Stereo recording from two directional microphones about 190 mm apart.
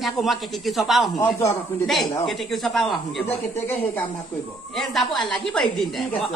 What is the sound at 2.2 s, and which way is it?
Speech, centre (ahead or behind).